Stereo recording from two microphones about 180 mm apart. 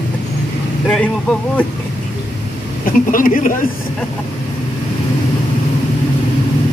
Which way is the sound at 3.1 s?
50° left (ahead or behind).